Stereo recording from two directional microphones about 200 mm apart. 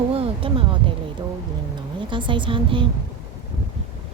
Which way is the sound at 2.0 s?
25° right (ahead or behind).